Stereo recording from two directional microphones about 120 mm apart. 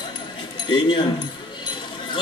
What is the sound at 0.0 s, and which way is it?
Speech, 40° left (ahead or behind).